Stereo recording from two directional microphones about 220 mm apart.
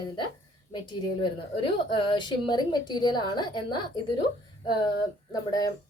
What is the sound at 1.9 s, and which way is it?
A woman's voice, 20° left (ahead or behind).